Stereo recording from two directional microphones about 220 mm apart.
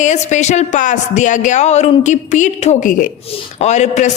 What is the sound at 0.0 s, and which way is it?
A woman's voice, 35° left (ahead or behind).